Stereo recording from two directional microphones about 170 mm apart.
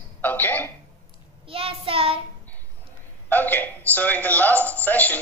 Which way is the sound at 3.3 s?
10° left (ahead or behind).